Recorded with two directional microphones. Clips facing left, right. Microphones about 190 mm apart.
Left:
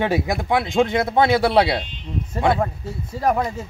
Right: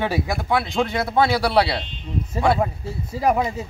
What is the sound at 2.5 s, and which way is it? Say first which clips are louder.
Speech: even; 5° right (ahead or behind).